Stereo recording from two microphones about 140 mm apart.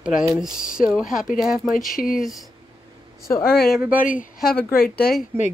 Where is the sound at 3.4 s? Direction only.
90° left.